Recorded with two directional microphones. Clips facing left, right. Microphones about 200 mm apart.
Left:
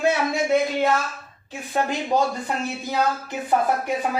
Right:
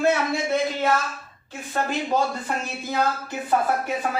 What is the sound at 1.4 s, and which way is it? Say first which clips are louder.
Speech: left 2 dB; 15° left (ahead or behind).